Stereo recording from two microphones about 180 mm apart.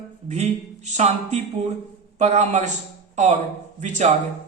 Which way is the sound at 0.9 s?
40° right (ahead or behind).